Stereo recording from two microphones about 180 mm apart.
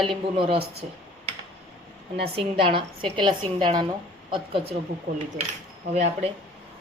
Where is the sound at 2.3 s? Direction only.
30° right (ahead or behind).